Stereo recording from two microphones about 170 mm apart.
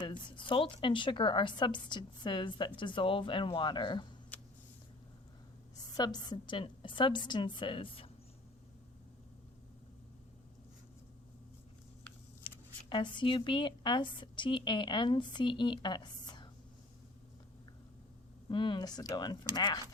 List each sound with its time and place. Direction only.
0.0 s a woman's voice: 25° left (ahead or behind)
6.0 s a woman's voice: 25° left (ahead or behind)
12.4 s speech: 30° left (ahead or behind)
18.4 s a woman's voice: 25° left (ahead or behind)